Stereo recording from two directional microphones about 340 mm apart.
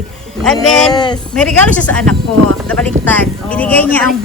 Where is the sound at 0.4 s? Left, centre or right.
Centre.